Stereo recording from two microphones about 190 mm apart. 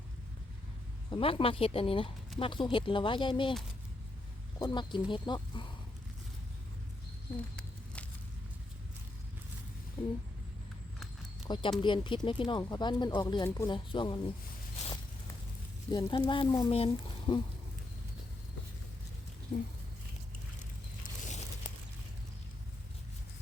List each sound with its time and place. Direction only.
1.1 s speech: 30° left (ahead or behind)
4.6 s speech: 25° left (ahead or behind)
11.4 s speech: 25° left (ahead or behind)
15.9 s speech: 25° left (ahead or behind)
19.5 s speech: 35° left (ahead or behind)
21.0 s a sound: 40° left (ahead or behind)